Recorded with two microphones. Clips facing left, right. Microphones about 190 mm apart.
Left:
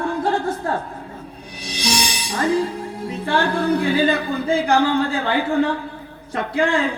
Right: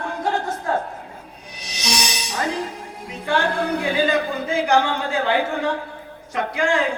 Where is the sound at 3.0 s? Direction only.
30° left (ahead or behind).